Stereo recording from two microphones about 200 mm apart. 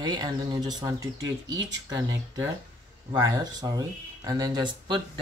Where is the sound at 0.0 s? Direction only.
20° right (ahead or behind).